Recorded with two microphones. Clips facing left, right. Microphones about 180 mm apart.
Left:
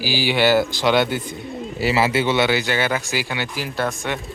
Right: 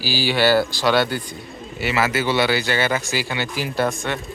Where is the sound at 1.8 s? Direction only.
30° left (ahead or behind).